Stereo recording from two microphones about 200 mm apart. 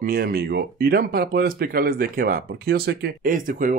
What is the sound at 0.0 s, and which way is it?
Speech, 50° right (ahead or behind).